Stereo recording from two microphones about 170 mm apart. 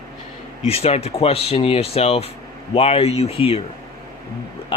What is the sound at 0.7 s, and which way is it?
Speech, 35° left (ahead or behind).